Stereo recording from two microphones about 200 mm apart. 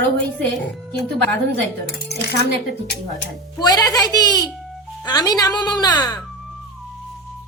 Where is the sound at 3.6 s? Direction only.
20° left (ahead or behind).